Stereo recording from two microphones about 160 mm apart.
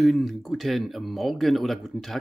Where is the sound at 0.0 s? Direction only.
Centre (ahead or behind).